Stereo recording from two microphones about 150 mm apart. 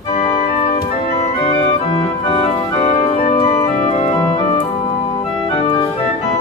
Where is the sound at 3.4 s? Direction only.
20° left (ahead or behind).